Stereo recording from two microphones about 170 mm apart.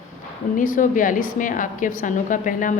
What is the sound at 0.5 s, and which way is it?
A woman's voice, 50° left (ahead or behind).